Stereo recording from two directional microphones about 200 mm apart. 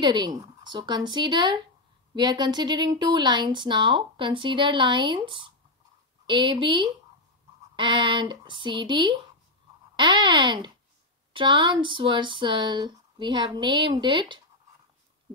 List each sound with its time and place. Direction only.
0.0 s a woman's voice: 20° right (ahead or behind)